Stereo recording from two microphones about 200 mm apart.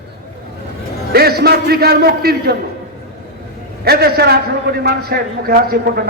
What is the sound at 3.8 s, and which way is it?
A man's voice, 50° right (ahead or behind).